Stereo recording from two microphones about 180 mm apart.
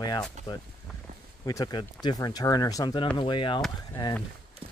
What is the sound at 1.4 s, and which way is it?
Speech, 20° left (ahead or behind).